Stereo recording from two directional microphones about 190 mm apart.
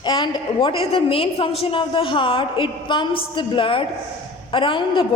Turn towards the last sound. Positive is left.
turn(degrees=25)  # may be behind; listen again after turning